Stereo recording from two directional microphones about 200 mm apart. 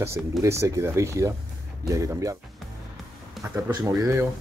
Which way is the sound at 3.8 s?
15° right (ahead or behind).